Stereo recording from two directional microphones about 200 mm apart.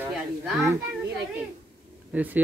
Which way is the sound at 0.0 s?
10° right (ahead or behind).